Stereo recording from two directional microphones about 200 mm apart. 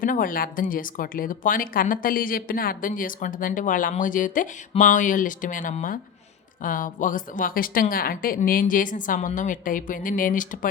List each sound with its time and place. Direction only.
0.0 s speech: 45° left (ahead or behind)